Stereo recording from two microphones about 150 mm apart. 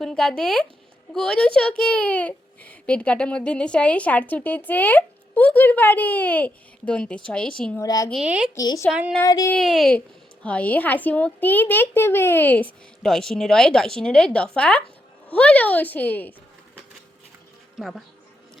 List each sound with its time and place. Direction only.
0.0 s a child's voice: 5° left (ahead or behind)
7.8 s a woman's voice: 20° left (ahead or behind)
8.1 s a woman's voice: 5° right (ahead or behind)
8.5 s a woman's voice: 25° left (ahead or behind)
8.9 s a woman's voice: 5° right (ahead or behind)
9.2 s a woman's voice: 20° left (ahead or behind)
9.6 s a child's voice: centre (ahead or behind)
17.7 s speech: centre (ahead or behind)